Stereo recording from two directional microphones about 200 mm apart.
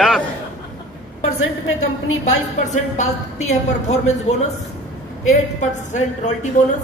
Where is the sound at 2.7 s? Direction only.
35° left (ahead or behind).